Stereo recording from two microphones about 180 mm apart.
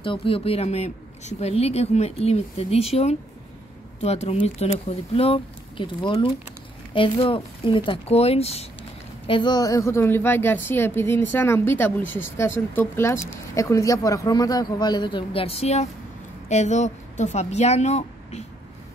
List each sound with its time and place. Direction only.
0.0 s speech: 30° left (ahead or behind)
9.3 s a woman's voice: 25° left (ahead or behind)